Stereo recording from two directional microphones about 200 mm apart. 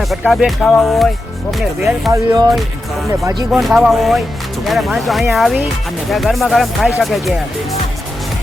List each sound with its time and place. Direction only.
0.0 s speech: centre (ahead or behind)
2.1 s speech: 15° right (ahead or behind)
3.5 s speech: centre (ahead or behind)